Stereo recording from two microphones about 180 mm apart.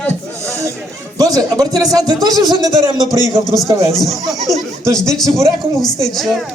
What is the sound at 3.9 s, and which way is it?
A woman's voice, centre (ahead or behind).